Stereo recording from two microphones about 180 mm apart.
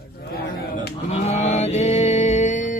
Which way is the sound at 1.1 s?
40° left (ahead or behind).